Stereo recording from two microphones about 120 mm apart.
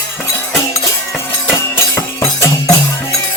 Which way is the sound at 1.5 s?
25° left (ahead or behind).